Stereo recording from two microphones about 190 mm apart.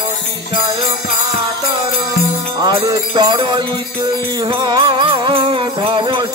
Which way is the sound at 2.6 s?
20° right (ahead or behind).